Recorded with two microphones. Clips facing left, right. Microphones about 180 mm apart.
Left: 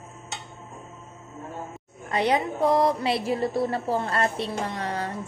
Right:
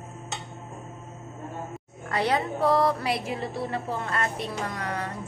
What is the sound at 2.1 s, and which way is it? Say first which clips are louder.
A woman's voice: left 2 dB; 20° left (ahead or behind).